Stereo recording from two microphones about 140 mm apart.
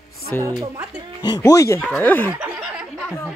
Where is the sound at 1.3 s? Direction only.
20° left (ahead or behind).